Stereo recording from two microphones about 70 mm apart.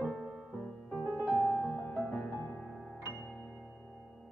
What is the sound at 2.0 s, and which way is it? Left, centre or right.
Music, left.